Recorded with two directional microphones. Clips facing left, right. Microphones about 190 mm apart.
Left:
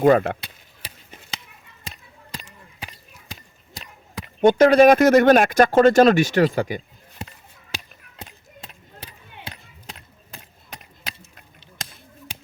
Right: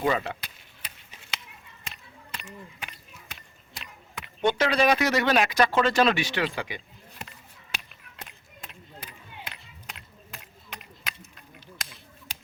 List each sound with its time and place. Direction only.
0.0 s speech: 50° left (ahead or behind)
0.4 s chop: 30° left (ahead or behind)
2.3 s a sound: 35° left (ahead or behind)
3.8 s speech: 40° left (ahead or behind)
8.1 s a sound: 30° left (ahead or behind)
11.0 s keys jangling: 25° left (ahead or behind)